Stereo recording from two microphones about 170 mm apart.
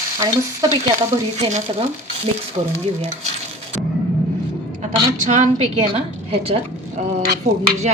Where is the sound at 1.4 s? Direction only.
45° right (ahead or behind).